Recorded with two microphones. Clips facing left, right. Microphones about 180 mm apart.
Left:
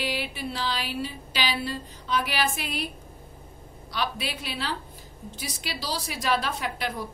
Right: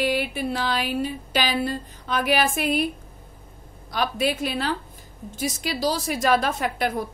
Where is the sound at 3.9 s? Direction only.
45° right (ahead or behind).